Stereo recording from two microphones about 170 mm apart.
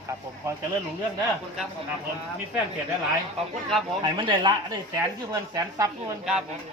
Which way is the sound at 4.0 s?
25° right (ahead or behind).